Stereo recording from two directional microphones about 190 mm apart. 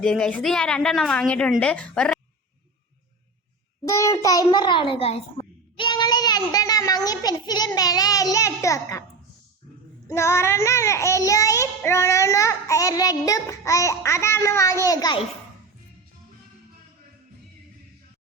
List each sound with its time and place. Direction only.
0.0 s a woman's voice: 5° left (ahead or behind)
3.8 s a child's voice: 15° left (ahead or behind)
10.1 s a child's voice: 15° left (ahead or behind)